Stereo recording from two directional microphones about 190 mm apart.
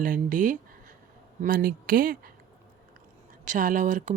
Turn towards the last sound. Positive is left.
turn(degrees=-40)  # may be behind; listen again after turning